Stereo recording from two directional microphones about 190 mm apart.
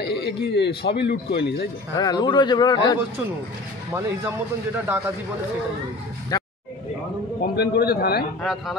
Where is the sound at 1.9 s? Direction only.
20° left (ahead or behind).